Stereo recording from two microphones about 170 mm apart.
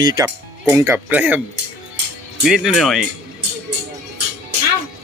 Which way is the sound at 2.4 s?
Centre (ahead or behind).